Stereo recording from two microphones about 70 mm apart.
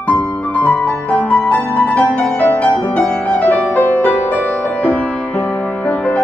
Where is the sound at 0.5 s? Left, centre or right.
Left.